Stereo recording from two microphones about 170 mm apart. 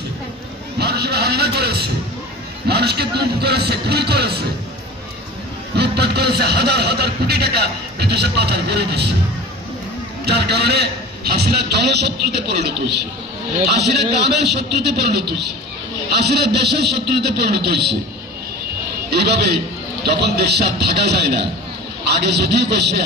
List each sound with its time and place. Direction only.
0.7 s speech: 70° right (ahead or behind)
5.8 s speech: 75° right (ahead or behind)
10.2 s speech: 75° right (ahead or behind)
19.0 s speech: 75° right (ahead or behind)